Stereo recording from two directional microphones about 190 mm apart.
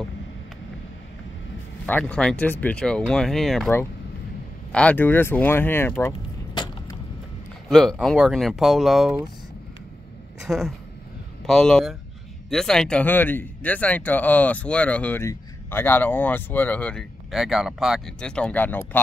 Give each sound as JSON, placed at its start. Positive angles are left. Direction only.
{"t": 1.9, "sound": "speech", "side_deg": 5}
{"t": 4.7, "sound": "speech", "side_deg": 10}
{"t": 6.5, "sound": "arrow", "side_deg": 25}
{"t": 7.7, "sound": "speech", "side_deg": 0}
{"t": 10.4, "sound": "a woman's voice", "side_deg": 0}